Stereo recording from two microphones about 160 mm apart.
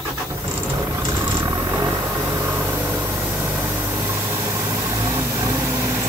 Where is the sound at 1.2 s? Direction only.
15° right (ahead or behind).